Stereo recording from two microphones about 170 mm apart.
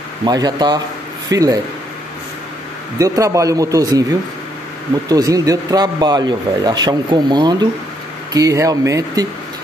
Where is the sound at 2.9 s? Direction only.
20° right (ahead or behind).